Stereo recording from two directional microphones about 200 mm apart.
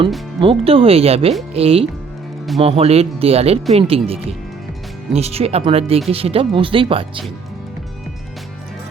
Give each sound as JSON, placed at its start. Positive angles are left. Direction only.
{"t": 0.3, "sound": "speech", "side_deg": -25}